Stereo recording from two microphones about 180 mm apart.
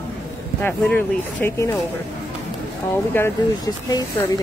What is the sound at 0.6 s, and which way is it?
Speech, 10° left (ahead or behind).